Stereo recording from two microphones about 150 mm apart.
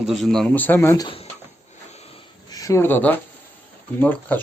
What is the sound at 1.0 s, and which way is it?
Speech, 35° left (ahead or behind).